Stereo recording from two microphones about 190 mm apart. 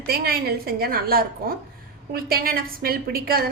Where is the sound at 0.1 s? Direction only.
55° right (ahead or behind).